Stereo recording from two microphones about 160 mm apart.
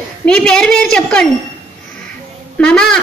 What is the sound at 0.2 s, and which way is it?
A woman's voice, 5° left (ahead or behind).